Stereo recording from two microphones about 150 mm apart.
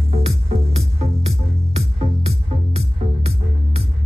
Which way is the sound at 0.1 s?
40° right (ahead or behind).